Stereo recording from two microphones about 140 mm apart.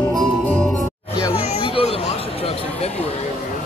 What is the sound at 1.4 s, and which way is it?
Chatter, 45° left (ahead or behind).